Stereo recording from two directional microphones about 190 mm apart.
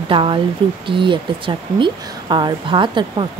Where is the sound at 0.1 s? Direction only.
25° right (ahead or behind).